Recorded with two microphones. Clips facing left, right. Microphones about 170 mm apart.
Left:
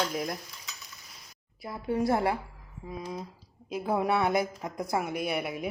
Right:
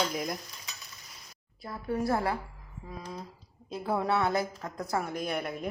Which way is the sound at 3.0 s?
10° left (ahead or behind).